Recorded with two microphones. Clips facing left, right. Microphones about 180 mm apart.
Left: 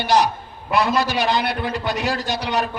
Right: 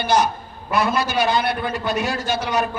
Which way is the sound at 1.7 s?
70° left (ahead or behind).